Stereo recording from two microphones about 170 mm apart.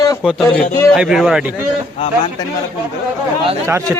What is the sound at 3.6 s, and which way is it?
Speech, 15° right (ahead or behind).